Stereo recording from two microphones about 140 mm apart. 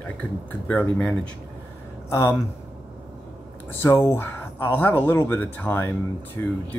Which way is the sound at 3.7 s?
20° left (ahead or behind).